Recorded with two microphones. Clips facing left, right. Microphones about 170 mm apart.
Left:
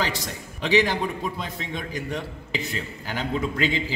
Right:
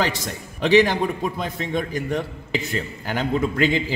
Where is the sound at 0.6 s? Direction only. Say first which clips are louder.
Right 5 dB; 55° right (ahead or behind).